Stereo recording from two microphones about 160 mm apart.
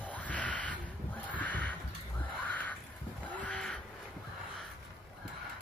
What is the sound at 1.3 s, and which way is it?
Neigh, 10° left (ahead or behind).